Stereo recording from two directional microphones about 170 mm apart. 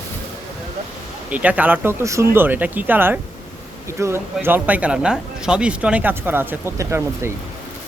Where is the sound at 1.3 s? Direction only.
10° right (ahead or behind).